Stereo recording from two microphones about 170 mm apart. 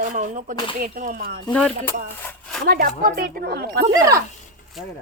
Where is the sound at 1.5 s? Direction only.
10° left (ahead or behind).